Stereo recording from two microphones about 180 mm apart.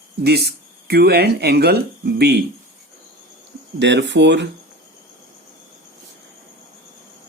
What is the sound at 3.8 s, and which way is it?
Speech, 75° right (ahead or behind).